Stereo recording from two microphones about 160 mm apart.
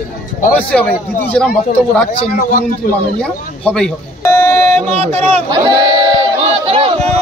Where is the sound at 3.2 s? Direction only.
5° left (ahead or behind).